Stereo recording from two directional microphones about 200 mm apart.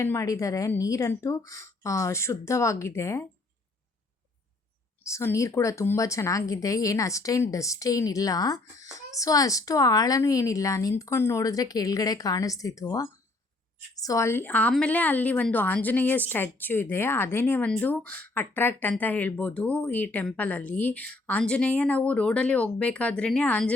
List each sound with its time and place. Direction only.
0.0 s a woman's voice: 15° left (ahead or behind)
5.0 s a woman's voice: 15° left (ahead or behind)